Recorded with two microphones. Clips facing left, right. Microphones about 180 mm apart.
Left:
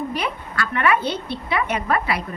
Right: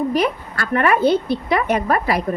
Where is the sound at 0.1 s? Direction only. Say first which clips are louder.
Right 7 dB; 45° right (ahead or behind).